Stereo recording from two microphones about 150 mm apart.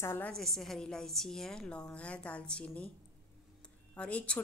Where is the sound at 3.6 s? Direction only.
10° left (ahead or behind).